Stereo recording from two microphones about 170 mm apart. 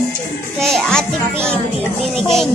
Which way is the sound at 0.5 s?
5° left (ahead or behind).